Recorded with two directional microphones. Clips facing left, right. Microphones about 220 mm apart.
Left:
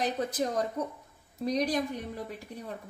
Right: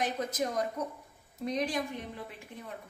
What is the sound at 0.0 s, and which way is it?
A woman's voice, 35° left (ahead or behind).